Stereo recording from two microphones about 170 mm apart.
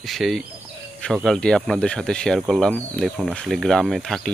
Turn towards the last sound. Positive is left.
turn(degrees=0)  # may be behind; listen again after turning